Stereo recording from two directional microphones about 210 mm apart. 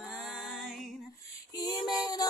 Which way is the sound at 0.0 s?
Centre (ahead or behind).